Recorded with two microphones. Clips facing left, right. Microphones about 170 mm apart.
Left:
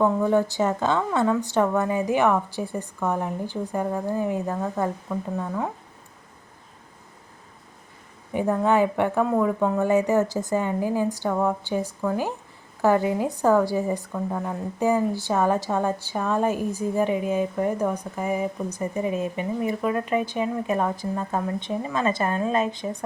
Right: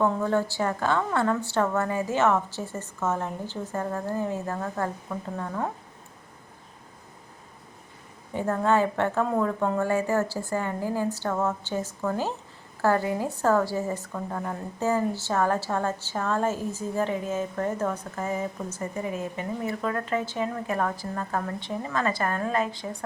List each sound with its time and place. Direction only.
0.0 s a woman's voice: 15° left (ahead or behind)
8.3 s a woman's voice: 15° left (ahead or behind)